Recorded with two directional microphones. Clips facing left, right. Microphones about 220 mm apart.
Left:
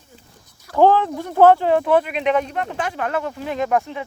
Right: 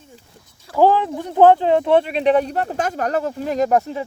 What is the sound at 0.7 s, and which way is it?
Speech, 10° right (ahead or behind).